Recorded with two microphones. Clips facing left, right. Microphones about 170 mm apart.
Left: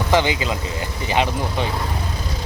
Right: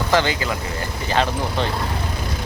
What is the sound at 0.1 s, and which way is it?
Speech, 15° left (ahead or behind).